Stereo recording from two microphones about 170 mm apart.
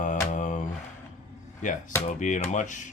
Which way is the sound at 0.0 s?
50° left (ahead or behind).